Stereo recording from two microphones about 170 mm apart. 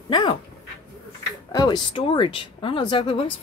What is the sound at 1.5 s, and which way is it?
Speech, 25° left (ahead or behind).